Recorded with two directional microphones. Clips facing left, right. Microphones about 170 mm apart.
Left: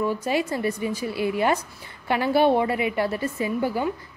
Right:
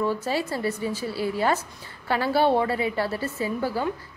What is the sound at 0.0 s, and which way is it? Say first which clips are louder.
A woman's voice: left 1 dB; 15° left (ahead or behind).